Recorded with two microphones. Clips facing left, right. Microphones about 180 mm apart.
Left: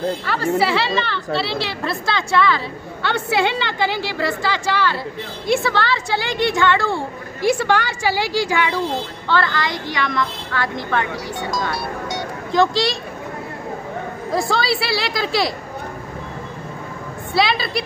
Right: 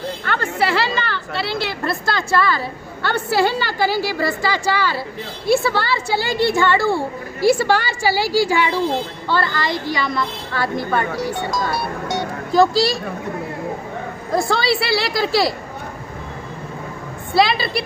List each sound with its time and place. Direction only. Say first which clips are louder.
0.2 s a woman's voice: left 2 dB; 5° left (ahead or behind)
12.5 s a woman's voice: right 2 dB; 5° right (ahead or behind)
14.3 s a woman's voice: right 2 dB; centre (ahead or behind)
17.3 s a woman's voice: right 2 dB; centre (ahead or behind)